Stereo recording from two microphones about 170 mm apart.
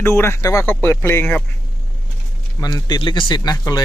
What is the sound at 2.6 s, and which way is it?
Speech, 25° left (ahead or behind).